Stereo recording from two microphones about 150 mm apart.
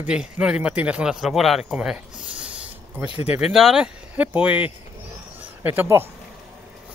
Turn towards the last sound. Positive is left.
turn(degrees=-15)  # may be behind; listen again after turning